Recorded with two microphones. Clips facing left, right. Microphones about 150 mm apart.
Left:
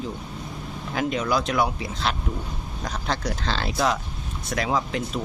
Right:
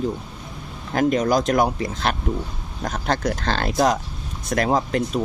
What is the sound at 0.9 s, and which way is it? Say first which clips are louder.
Speech: right 6 dB; 45° right (ahead or behind).